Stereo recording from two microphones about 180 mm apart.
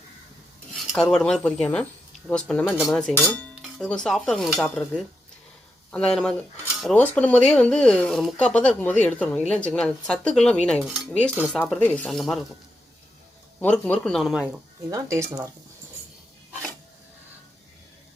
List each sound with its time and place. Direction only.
1.1 s speech: 5° left (ahead or behind)
13.6 s speech: 10° left (ahead or behind)
14.8 s speech: 15° right (ahead or behind)